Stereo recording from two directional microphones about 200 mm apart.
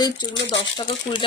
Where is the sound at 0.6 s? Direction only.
20° left (ahead or behind).